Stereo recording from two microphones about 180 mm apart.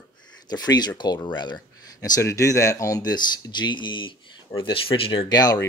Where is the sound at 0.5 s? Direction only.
20° left (ahead or behind).